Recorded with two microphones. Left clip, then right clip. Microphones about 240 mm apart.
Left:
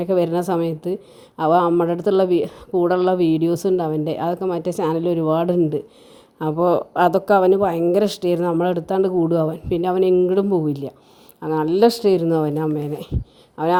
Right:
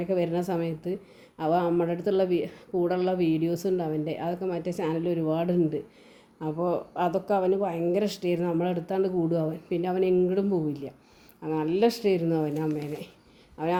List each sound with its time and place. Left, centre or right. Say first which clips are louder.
0.0 s speech: left 8 dB; left